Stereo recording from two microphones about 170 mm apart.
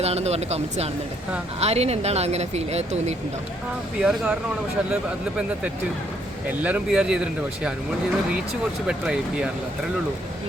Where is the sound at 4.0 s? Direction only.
5° right (ahead or behind).